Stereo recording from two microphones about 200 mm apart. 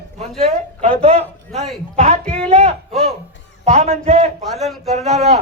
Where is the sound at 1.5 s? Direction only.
Centre (ahead or behind).